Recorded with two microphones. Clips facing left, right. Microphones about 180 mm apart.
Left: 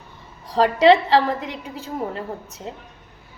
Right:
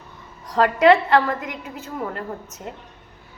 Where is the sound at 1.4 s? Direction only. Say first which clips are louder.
Left 1 dB; 30° left (ahead or behind).